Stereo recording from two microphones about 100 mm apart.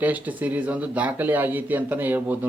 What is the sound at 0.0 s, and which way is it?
Speech, 15° right (ahead or behind).